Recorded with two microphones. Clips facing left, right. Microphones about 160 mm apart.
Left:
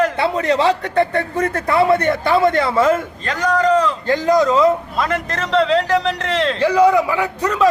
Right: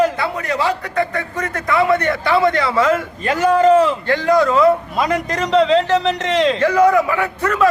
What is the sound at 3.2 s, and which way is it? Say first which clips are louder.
Speech: right 4 dB; 20° right (ahead or behind).